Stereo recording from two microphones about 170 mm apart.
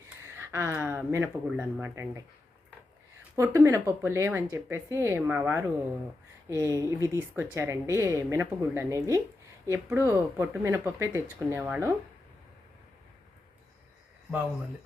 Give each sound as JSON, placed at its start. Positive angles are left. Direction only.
{"t": 0.3, "sound": "a woman's voice", "side_deg": -15}
{"t": 3.3, "sound": "a woman's voice", "side_deg": -15}